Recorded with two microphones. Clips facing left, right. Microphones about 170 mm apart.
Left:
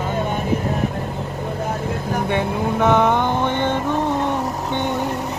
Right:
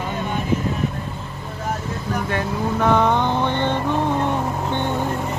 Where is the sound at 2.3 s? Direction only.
20° left (ahead or behind).